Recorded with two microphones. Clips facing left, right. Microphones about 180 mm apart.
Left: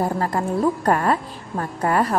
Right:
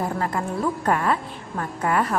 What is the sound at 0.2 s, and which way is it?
A woman's voice, 35° left (ahead or behind).